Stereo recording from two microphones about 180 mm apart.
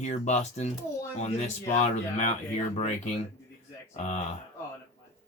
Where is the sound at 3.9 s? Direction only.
40° left (ahead or behind).